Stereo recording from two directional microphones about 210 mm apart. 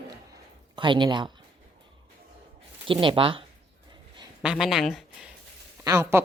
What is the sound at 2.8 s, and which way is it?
Speech, 25° right (ahead or behind).